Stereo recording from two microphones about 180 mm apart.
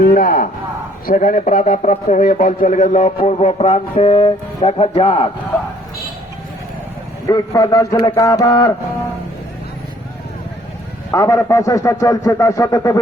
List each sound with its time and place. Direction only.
0.0 s a man's voice: 50° left (ahead or behind); by 5.3 s 35° left (ahead or behind)
7.3 s a man's voice: 20° left (ahead or behind)
11.1 s speech: 15° left (ahead or behind)